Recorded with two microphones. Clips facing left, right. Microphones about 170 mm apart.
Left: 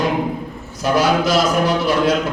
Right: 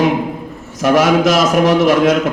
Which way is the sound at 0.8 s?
80° right.